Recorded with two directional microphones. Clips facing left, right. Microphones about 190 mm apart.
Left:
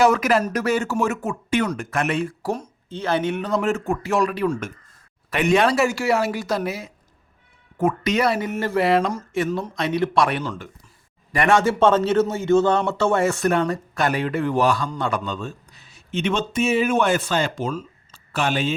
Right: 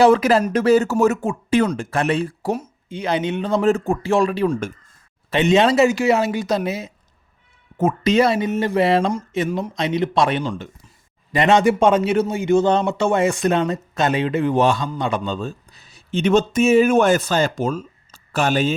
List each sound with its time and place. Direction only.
0.0 s speech: 30° right (ahead or behind)
2.6 s a man's voice: 15° right (ahead or behind)
15.2 s speech: 35° right (ahead or behind)